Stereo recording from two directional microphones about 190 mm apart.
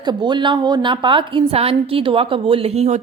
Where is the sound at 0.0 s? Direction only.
25° right (ahead or behind).